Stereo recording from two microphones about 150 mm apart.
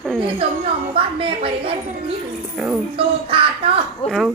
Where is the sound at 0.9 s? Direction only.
35° right (ahead or behind).